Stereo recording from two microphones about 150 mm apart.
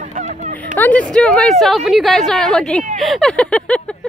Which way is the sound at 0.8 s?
10° left (ahead or behind).